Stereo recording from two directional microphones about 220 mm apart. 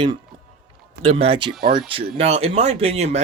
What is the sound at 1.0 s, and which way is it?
Speech, 25° right (ahead or behind).